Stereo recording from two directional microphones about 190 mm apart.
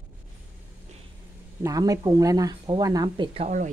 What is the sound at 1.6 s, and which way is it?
A woman's voice, 20° right (ahead or behind).